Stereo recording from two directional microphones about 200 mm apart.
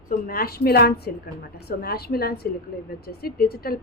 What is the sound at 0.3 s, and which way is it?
A woman's voice, 50° left (ahead or behind).